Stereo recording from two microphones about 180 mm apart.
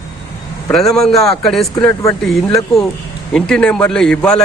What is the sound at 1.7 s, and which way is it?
Speech, 15° left (ahead or behind).